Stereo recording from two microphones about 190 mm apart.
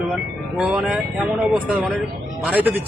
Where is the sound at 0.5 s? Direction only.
5° right (ahead or behind).